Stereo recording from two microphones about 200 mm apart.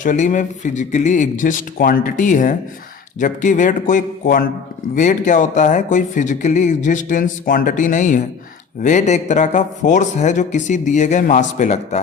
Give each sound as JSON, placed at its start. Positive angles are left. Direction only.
{"t": 0.0, "sound": "speech", "side_deg": 40}